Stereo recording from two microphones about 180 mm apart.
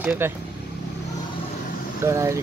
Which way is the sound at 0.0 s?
10° right (ahead or behind).